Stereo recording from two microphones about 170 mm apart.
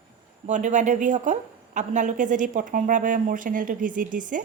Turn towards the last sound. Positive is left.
turn(degrees=-50)  # may be behind; listen again after turning